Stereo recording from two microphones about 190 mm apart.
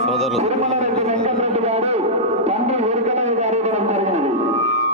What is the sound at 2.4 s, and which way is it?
Music, 35° right (ahead or behind).